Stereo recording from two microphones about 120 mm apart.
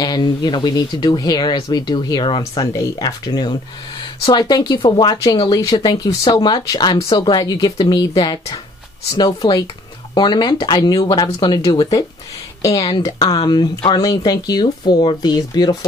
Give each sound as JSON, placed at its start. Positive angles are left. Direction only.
{"t": 0.0, "sound": "speech", "side_deg": 35}
{"t": 2.7, "sound": "speech", "side_deg": 30}